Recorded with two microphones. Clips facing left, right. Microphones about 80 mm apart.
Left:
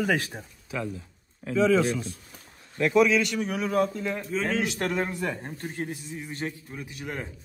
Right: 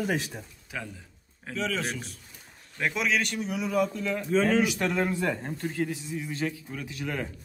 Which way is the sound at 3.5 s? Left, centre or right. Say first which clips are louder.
Left 1 dB; left.